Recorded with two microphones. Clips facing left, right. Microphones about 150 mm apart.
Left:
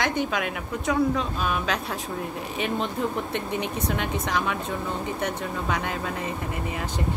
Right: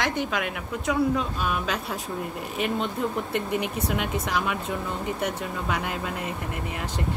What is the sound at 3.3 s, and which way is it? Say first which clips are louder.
Speech: right 1 dB; 5° right (ahead or behind).